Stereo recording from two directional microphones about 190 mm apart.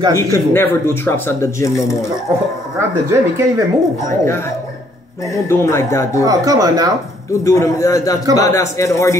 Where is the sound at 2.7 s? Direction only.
15° right (ahead or behind).